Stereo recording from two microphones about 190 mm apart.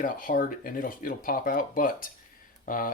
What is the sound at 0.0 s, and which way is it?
Speech, 45° left (ahead or behind).